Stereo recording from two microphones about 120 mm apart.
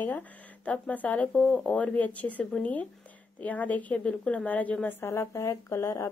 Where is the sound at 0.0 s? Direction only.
15° left (ahead or behind).